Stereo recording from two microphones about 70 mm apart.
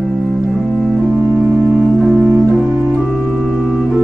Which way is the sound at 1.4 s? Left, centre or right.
Right.